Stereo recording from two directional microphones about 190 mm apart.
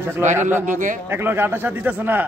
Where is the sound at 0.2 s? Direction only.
40° right (ahead or behind).